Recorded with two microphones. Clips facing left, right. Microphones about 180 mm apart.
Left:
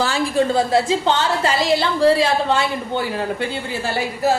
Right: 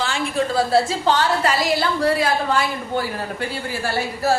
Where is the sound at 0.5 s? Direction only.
20° left (ahead or behind).